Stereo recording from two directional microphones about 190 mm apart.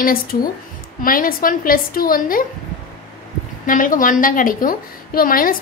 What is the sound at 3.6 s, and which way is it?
A woman's voice, 45° left (ahead or behind).